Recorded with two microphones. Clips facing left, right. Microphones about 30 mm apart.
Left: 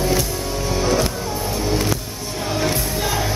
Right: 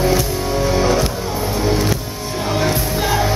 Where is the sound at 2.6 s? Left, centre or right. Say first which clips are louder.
Right 3 dB; centre.